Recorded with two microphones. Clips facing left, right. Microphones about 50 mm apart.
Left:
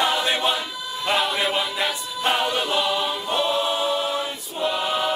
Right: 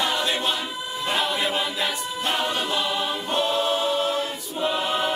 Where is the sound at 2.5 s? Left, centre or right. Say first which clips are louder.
Left 2 dB; centre.